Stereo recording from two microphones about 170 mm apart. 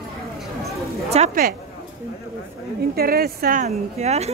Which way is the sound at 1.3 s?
60° right (ahead or behind).